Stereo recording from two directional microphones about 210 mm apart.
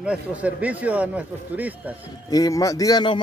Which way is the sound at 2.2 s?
15° left (ahead or behind).